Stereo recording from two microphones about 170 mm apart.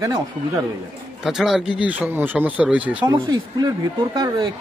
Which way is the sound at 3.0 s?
25° right (ahead or behind).